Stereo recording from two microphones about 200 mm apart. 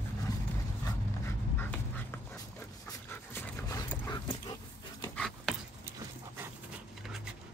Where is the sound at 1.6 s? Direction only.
10° left (ahead or behind).